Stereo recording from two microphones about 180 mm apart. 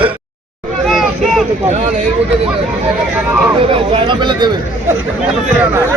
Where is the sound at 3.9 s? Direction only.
25° right (ahead or behind).